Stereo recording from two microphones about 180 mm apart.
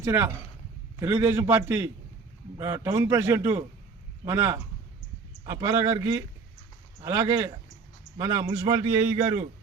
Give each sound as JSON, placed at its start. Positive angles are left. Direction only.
{"t": 0.0, "sound": "a man's voice", "side_deg": -15}